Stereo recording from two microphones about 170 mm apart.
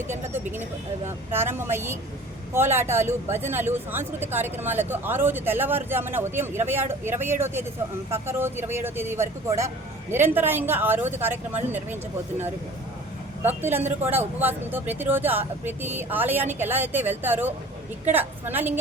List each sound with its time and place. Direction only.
1.0 s speech: 15° right (ahead or behind)
13.6 s speech: 15° right (ahead or behind)